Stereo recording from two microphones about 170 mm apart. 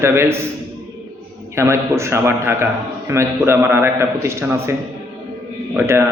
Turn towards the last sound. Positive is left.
turn(degrees=-15)  # may be behind; listen again after turning